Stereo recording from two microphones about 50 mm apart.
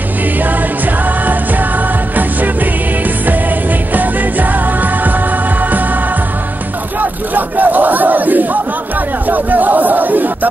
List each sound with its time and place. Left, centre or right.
0.4 s music: right
7.0 s battle cry: right